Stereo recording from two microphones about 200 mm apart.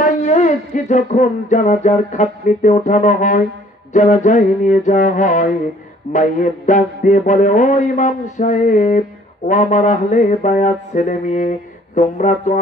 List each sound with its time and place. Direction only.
0.0 s music: 35° left (ahead or behind)
3.9 s mantra: 40° left (ahead or behind)